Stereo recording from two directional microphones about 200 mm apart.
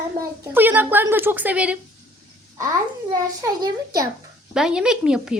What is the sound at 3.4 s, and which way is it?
Speech, 20° right (ahead or behind).